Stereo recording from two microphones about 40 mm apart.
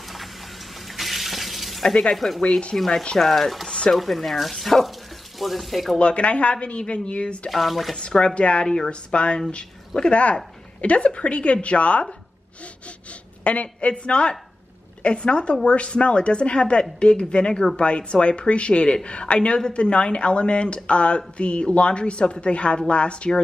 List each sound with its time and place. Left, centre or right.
0.8 s water: centre
2.1 s speech: centre
2.7 s speech: centre
3.2 s speech: centre
5.9 s a woman's voice: left
7.4 s speech: centre
7.9 s a woman's voice: left
13.4 s a woman's voice: left